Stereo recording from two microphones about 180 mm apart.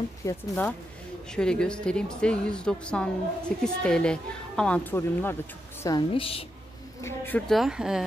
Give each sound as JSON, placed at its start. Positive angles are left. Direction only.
{"t": 0.2, "sound": "a woman's voice", "side_deg": 10}
{"t": 5.9, "sound": "a woman's voice", "side_deg": 30}
{"t": 7.0, "sound": "a woman's voice", "side_deg": 10}